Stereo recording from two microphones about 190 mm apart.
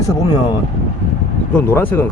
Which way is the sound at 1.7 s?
10° left (ahead or behind).